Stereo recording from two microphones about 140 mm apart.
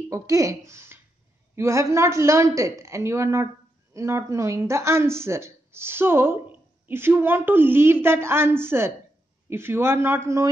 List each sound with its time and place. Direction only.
0.1 s a woman's voice: 25° right (ahead or behind)